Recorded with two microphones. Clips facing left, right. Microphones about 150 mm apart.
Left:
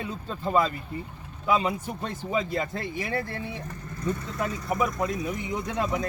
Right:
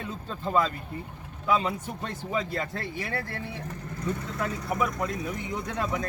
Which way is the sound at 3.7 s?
75° right (ahead or behind).